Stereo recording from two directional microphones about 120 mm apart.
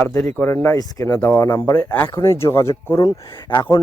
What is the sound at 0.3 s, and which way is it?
Speech, 20° left (ahead or behind).